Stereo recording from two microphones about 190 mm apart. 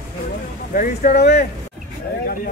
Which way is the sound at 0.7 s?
45° left (ahead or behind).